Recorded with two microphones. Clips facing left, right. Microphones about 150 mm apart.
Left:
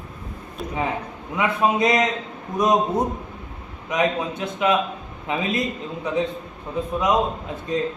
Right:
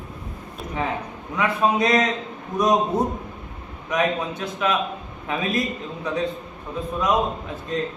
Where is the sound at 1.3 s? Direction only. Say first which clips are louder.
Even; 20° left (ahead or behind).